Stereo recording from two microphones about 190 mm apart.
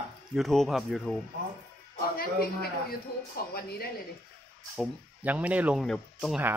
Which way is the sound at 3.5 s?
55° left (ahead or behind).